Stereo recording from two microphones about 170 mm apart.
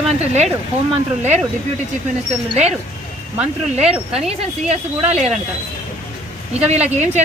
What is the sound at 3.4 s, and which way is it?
Speech, 40° right (ahead or behind).